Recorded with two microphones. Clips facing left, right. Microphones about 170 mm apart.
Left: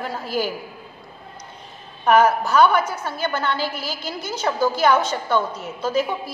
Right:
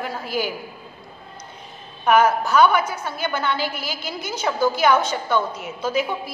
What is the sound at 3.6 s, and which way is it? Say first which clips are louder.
Speech: left 1 dB; 35° left (ahead or behind).